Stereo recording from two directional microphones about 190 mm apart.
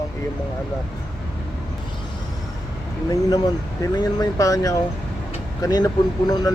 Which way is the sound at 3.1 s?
20° left (ahead or behind).